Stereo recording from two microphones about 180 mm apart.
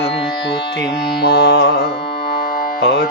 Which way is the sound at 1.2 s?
65° left (ahead or behind).